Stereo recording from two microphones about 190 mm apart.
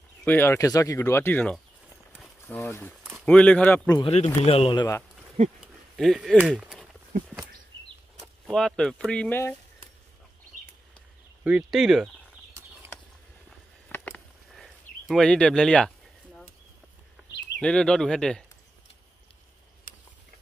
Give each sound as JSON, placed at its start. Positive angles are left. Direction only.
{"t": 0.2, "sound": "speech", "side_deg": 10}
{"t": 4.0, "sound": "speech", "side_deg": 35}
{"t": 5.6, "sound": "a sound", "side_deg": 0}
{"t": 8.2, "sound": "speech", "side_deg": 0}
{"t": 11.4, "sound": "speech", "side_deg": -5}
{"t": 13.5, "sound": "a sound", "side_deg": 5}
{"t": 17.6, "sound": "speech", "side_deg": 5}